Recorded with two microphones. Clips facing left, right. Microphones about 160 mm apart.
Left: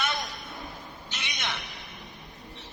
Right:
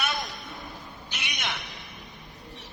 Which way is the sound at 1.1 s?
15° right (ahead or behind).